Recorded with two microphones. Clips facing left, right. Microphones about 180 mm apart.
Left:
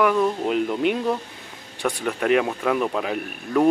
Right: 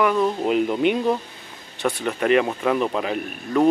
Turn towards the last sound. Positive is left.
turn(degrees=5)  # may be behind; listen again after turning